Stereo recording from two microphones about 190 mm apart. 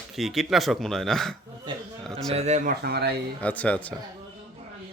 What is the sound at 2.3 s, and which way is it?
Speech, 35° right (ahead or behind).